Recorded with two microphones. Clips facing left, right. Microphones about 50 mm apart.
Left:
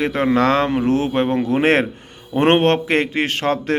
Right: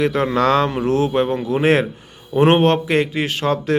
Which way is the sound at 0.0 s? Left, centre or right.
Left.